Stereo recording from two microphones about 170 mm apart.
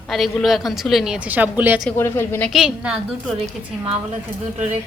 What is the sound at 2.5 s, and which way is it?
Speech, 5° right (ahead or behind).